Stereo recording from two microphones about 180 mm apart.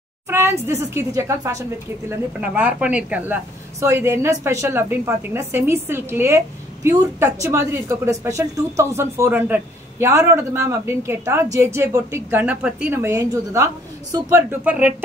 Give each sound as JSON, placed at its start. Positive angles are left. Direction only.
{"t": 0.3, "sound": "a woman's voice", "side_deg": -15}